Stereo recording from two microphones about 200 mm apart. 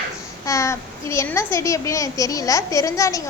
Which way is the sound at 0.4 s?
15° left (ahead or behind).